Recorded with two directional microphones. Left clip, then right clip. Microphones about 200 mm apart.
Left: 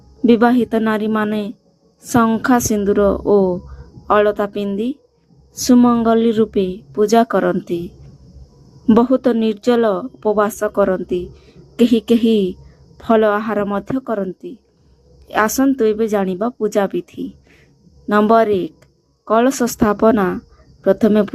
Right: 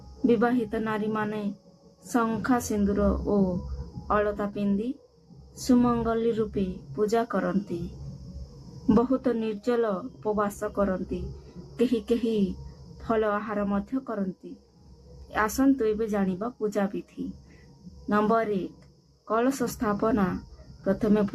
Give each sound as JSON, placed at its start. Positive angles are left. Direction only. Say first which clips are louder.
{"t": 0.3, "sound": "speech", "louder": "left 11 dB", "side_deg": 45}
{"t": 8.9, "sound": "speech", "louder": "left 11 dB", "side_deg": 40}
{"t": 15.3, "sound": "speech", "louder": "left 9 dB", "side_deg": 40}
{"t": 18.1, "sound": "speech", "louder": "left 12 dB", "side_deg": 40}